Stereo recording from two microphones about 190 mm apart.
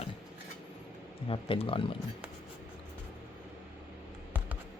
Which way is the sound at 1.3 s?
30° left (ahead or behind).